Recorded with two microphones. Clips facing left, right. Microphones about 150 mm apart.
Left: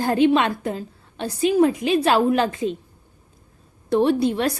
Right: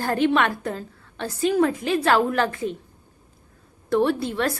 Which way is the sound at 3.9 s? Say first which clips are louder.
Left 3 dB; 15° left (ahead or behind).